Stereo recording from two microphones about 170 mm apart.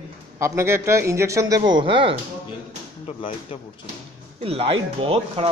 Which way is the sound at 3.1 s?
35° left (ahead or behind).